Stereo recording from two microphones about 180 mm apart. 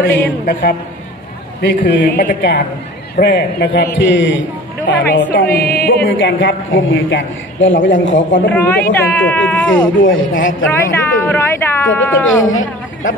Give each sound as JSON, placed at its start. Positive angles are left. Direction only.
{"t": 0.0, "sound": "a man's voice", "side_deg": 65}
{"t": 1.9, "sound": "a man's voice", "side_deg": 65}
{"t": 5.3, "sound": "music", "side_deg": 55}
{"t": 5.8, "sound": "a man's voice", "side_deg": 55}
{"t": 8.5, "sound": "speech", "side_deg": 10}
{"t": 9.9, "sound": "a man's voice", "side_deg": 90}
{"t": 10.7, "sound": "speech", "side_deg": 15}
{"t": 12.3, "sound": "a man's voice", "side_deg": 90}